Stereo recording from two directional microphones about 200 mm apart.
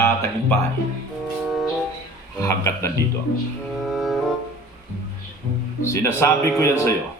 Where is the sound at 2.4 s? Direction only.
15° left (ahead or behind).